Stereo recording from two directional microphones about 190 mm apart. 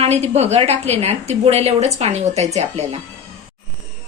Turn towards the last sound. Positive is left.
turn(degrees=-35)  # may be behind; listen again after turning